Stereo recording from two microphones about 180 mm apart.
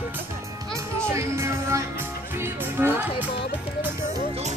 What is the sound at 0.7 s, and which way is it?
Music, 15° right (ahead or behind).